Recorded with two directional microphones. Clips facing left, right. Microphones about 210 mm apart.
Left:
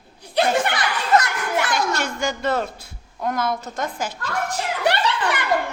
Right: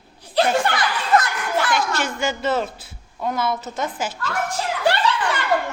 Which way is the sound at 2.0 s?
5° right (ahead or behind).